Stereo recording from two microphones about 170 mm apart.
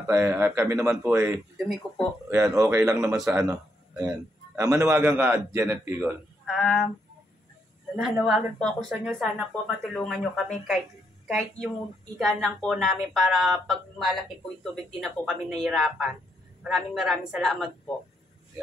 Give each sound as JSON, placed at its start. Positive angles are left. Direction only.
{"t": 0.0, "sound": "a man's voice", "side_deg": -15}
{"t": 6.4, "sound": "speech", "side_deg": 0}
{"t": 7.9, "sound": "a woman's voice", "side_deg": -5}